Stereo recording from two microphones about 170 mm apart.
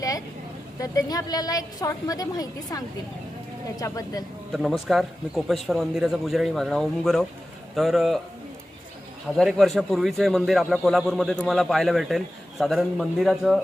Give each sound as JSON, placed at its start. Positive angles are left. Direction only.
{"t": 0.8, "sound": "a woman's voice", "side_deg": 20}
{"t": 4.9, "sound": "a man's voice", "side_deg": 0}
{"t": 9.4, "sound": "a man's voice", "side_deg": 0}